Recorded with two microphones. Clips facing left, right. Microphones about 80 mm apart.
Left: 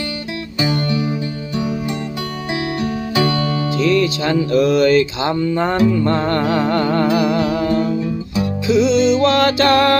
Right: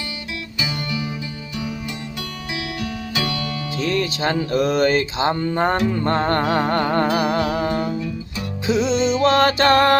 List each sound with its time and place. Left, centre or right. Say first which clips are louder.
0.6 s music: left 8 dB; left
2.8 s music: left 8 dB; left
3.8 s music: left 5 dB; right
7.7 s music: left 5 dB; centre
8.6 s music: left 5 dB; right